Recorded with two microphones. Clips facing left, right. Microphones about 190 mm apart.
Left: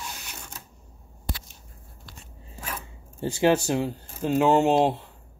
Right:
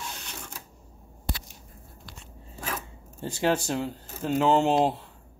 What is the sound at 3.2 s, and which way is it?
Speech, 10° left (ahead or behind).